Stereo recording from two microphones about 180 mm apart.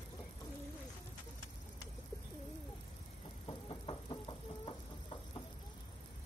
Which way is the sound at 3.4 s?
30° left (ahead or behind).